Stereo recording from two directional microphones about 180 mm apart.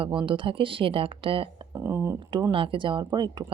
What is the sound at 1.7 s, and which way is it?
Speech, 15° right (ahead or behind).